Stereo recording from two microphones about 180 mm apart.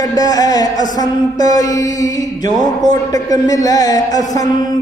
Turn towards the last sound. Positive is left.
turn(degrees=20)  # may be behind; listen again after turning